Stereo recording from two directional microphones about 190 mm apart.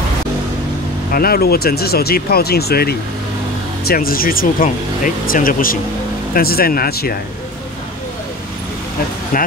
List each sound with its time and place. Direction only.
1.1 s speech: 50° left (ahead or behind)